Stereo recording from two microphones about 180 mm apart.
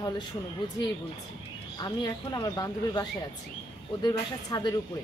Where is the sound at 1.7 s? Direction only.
25° left (ahead or behind).